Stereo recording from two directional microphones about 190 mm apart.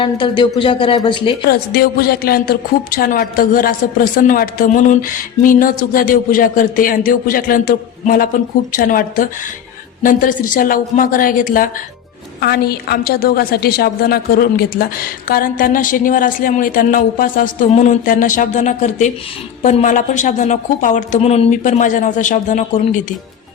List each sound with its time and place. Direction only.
0.0 s speech: 25° left (ahead or behind)
1.5 s a woman's voice: 55° left (ahead or behind)